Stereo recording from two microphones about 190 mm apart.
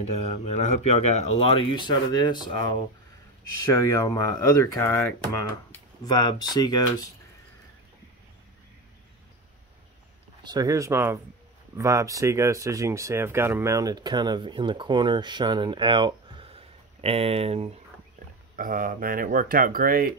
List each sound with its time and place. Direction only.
0.6 s speech: 35° left (ahead or behind)
10.4 s speech: 20° right (ahead or behind)
18.6 s speech: 45° right (ahead or behind)